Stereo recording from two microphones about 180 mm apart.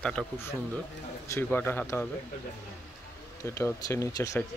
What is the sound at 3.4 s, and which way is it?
Speech, 15° left (ahead or behind).